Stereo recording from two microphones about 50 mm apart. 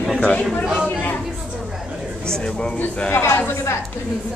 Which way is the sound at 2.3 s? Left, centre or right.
Centre.